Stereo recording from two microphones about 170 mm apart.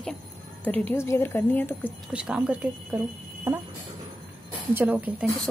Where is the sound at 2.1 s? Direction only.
5° right (ahead or behind).